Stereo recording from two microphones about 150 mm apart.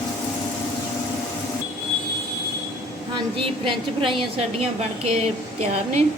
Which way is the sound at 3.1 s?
35° right (ahead or behind).